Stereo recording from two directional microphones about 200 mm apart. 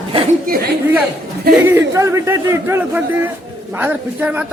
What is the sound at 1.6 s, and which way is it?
Speech, 15° right (ahead or behind).